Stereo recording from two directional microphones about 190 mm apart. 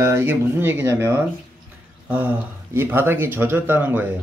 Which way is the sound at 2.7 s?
10° right (ahead or behind).